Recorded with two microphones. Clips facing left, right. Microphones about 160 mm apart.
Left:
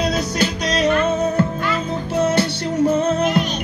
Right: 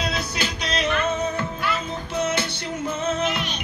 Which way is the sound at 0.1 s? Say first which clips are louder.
Left 7 dB; 45° left (ahead or behind).